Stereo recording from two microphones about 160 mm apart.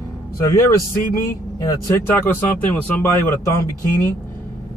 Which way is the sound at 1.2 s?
20° left (ahead or behind).